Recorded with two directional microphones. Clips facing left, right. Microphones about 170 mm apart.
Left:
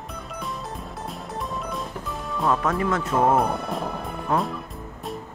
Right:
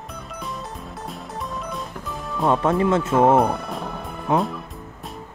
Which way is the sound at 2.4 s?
25° right (ahead or behind).